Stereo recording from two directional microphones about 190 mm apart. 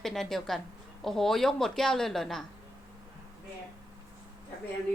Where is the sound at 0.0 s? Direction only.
Centre (ahead or behind).